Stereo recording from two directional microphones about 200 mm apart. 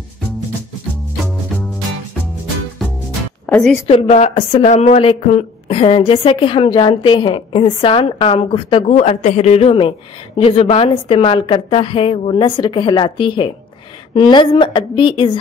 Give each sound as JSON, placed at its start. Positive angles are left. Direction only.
{"t": 2.8, "sound": "music", "side_deg": 0}
{"t": 3.4, "sound": "a woman's voice", "side_deg": 5}
{"t": 3.8, "sound": "speech", "side_deg": 30}